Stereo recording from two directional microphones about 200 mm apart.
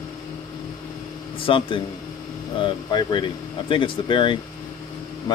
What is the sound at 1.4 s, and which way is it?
Speech, 25° left (ahead or behind).